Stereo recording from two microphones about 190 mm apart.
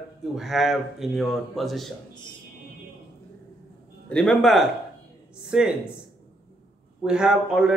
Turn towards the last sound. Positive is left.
turn(degrees=-5)  # may be behind; listen again after turning